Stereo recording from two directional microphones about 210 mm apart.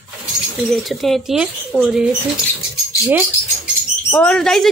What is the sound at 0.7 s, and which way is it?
Speech, centre (ahead or behind).